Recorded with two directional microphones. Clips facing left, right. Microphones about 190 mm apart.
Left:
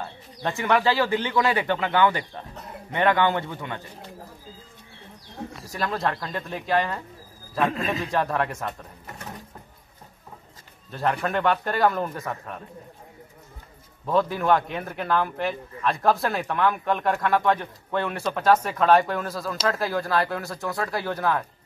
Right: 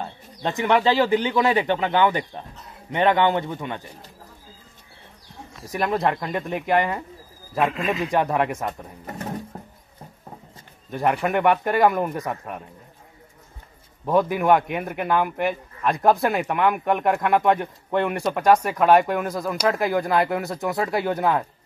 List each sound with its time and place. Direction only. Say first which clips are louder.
0.4 s speech: right 2 dB; 20° right (ahead or behind)
5.7 s a man's voice: right 5 dB; 20° right (ahead or behind)
7.7 s a man's voice: right 2 dB; 35° left (ahead or behind)
8.0 s a man's voice: right 5 dB; 15° right (ahead or behind)
10.9 s a man's voice: right 3 dB; 15° right (ahead or behind)
14.0 s a man's voice: right 3 dB; 15° right (ahead or behind)